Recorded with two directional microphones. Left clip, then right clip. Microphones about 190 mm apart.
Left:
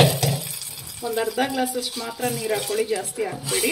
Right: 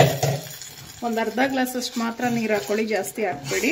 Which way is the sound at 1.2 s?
50° right (ahead or behind).